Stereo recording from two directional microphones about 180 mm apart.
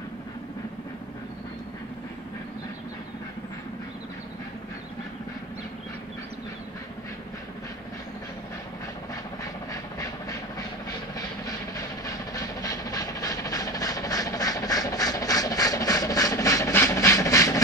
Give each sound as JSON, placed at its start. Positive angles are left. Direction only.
{"t": 9.4, "sound": "train", "side_deg": 20}